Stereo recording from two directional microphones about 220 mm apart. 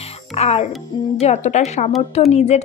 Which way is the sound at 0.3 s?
30° left (ahead or behind).